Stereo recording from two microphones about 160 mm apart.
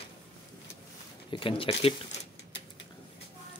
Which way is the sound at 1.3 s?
35° left (ahead or behind).